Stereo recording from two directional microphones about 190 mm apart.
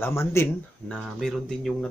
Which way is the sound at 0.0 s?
15° left (ahead or behind).